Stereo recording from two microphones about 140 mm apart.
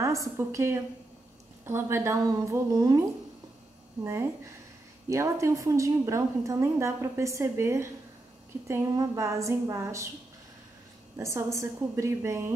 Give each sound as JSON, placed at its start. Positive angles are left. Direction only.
{"t": 0.0, "sound": "a woman's voice", "side_deg": -20}
{"t": 11.1, "sound": "a woman's voice", "side_deg": -20}